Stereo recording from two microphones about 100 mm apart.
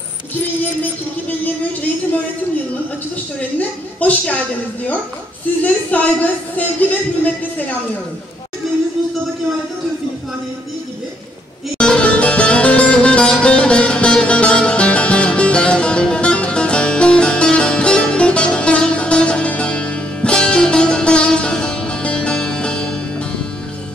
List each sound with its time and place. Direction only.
3.3 s a woman's voice: 15° left (ahead or behind)
5.6 s a woman's voice: 15° left (ahead or behind)
11.8 s music: 10° left (ahead or behind)